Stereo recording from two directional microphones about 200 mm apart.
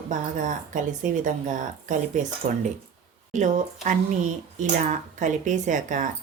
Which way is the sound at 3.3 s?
35° right (ahead or behind).